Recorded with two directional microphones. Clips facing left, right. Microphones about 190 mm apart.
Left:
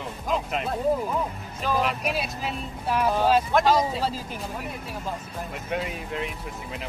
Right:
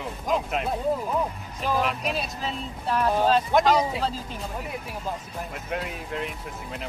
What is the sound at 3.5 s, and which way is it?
Speech, 15° right (ahead or behind).